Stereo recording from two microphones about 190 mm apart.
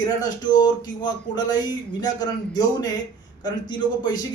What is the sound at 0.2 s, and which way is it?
A man's voice, 20° left (ahead or behind).